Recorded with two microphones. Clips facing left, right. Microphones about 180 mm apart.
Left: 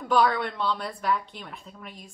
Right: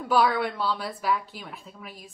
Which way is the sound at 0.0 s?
5° right (ahead or behind).